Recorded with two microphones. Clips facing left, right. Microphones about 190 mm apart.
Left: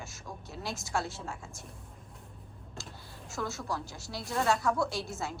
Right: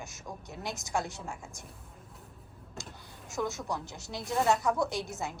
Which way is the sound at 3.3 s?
20° right (ahead or behind).